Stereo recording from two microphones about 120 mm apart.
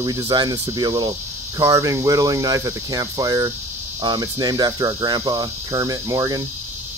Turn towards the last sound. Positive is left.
turn(degrees=-30)  # may be behind; listen again after turning